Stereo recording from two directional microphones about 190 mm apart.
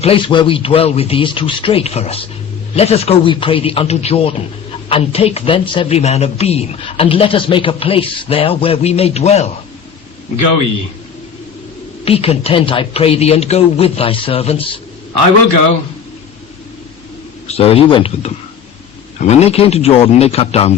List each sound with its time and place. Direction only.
0.0 s speech: 25° left (ahead or behind)
12.0 s speech: 30° left (ahead or behind)
17.5 s speech: 30° left (ahead or behind)